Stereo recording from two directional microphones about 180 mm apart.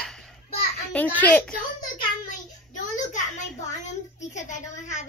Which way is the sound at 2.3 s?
45° left (ahead or behind).